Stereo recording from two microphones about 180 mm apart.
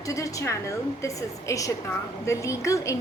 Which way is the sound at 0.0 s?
20° left (ahead or behind).